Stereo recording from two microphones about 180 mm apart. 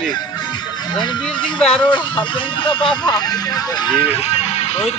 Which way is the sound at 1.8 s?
25° left (ahead or behind).